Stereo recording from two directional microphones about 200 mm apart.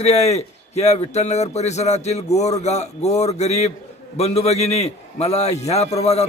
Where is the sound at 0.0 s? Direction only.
35° left (ahead or behind).